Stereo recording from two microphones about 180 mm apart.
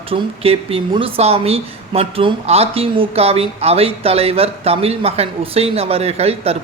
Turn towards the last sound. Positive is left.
turn(degrees=-35)  # may be behind; listen again after turning